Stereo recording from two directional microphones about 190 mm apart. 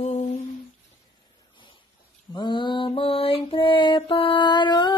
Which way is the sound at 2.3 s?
25° left (ahead or behind).